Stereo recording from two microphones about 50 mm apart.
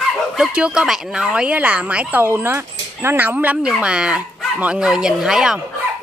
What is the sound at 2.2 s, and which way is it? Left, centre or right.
Speech, right.